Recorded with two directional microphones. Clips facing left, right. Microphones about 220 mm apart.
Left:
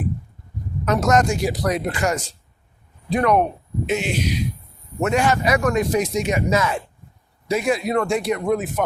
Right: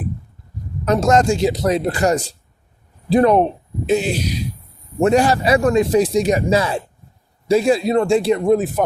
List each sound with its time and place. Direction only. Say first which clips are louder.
0.9 s a man's voice: right 3 dB; 30° right (ahead or behind)